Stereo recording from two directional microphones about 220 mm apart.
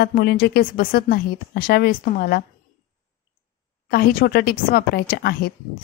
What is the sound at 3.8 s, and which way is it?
A woman's voice, 45° left (ahead or behind).